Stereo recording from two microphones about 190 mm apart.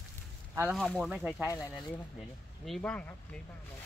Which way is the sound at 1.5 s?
15° left (ahead or behind).